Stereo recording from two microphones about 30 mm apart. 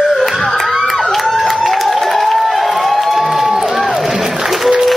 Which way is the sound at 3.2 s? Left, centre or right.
Centre.